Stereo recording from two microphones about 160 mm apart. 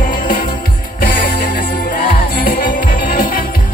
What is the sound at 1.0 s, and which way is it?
Music, 60° left (ahead or behind).